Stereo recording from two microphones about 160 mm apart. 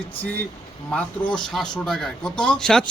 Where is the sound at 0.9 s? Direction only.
5° left (ahead or behind).